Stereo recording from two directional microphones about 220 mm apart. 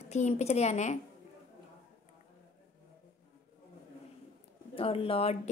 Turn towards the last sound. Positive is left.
turn(degrees=25)  # may be behind; listen again after turning